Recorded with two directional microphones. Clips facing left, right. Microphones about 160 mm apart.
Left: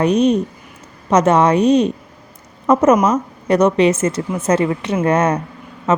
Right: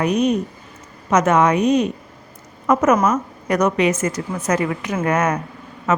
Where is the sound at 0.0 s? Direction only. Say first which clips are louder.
Left 4 dB; 30° left (ahead or behind).